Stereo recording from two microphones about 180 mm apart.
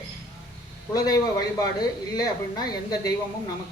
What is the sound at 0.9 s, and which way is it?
A man's voice, 20° left (ahead or behind).